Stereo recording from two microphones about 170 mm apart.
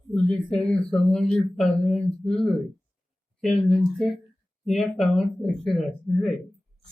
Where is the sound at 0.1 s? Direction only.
5° left (ahead or behind).